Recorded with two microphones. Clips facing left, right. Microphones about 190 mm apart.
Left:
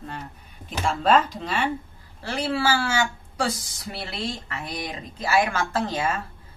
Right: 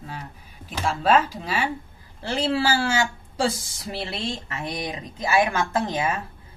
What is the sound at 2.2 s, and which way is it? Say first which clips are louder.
Speech: right 2 dB; 25° right (ahead or behind).